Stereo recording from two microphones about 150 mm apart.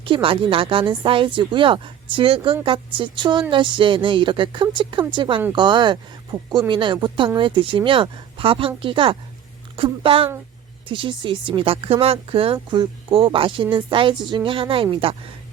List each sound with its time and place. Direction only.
0.0 s speech: 35° right (ahead or behind)